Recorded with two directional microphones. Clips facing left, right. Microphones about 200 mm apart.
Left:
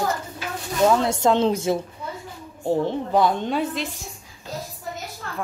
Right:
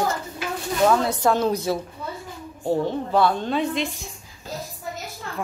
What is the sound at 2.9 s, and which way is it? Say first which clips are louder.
Speech: even; 15° left (ahead or behind).